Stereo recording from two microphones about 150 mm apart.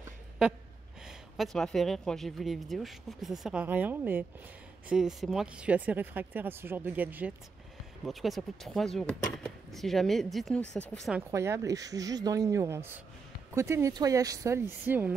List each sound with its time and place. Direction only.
1.0 s speech: centre (ahead or behind)
8.0 s speech: centre (ahead or behind)
11.1 s speech: 20° right (ahead or behind)